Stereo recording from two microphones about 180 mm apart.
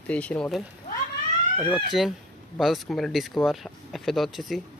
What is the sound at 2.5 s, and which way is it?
Speech, centre (ahead or behind).